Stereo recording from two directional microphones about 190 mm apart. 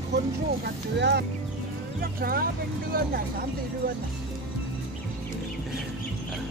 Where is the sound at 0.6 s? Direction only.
60° right (ahead or behind).